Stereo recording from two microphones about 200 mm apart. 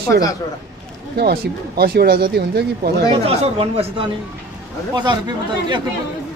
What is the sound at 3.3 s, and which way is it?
Speech, 30° right (ahead or behind).